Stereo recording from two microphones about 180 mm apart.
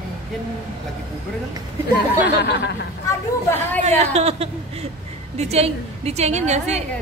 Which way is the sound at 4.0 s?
35° right (ahead or behind).